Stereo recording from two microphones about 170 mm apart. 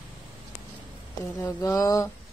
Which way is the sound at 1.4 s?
20° left (ahead or behind).